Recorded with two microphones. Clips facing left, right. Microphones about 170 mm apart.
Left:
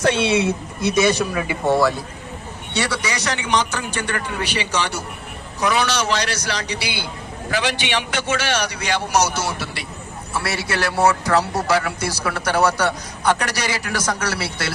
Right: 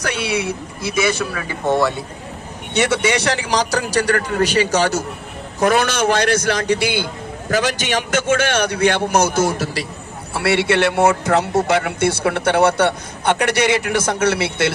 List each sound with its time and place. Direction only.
0.0 s speech: 25° left (ahead or behind)
1.7 s speech: centre (ahead or behind)
2.7 s a man's voice: 25° right (ahead or behind); by 9.8 s 45° right (ahead or behind)
10.4 s a man's voice: 65° right (ahead or behind)
10.7 s a man's voice: 25° right (ahead or behind)